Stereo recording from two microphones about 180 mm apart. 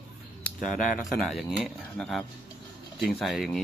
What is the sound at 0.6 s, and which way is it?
Speech, 45° left (ahead or behind).